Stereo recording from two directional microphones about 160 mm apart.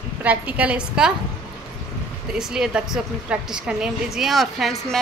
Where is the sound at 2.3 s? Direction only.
5° right (ahead or behind).